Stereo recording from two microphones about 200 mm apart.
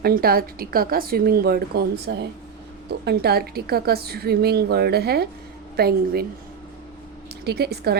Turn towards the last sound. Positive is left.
turn(degrees=-55)  # may be behind; listen again after turning